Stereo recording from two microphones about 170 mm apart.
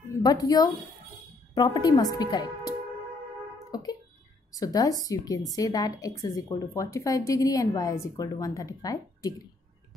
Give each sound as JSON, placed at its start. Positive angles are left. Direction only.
{"t": 0.2, "sound": "a woman's voice", "side_deg": 20}
{"t": 4.6, "sound": "a woman's voice", "side_deg": 20}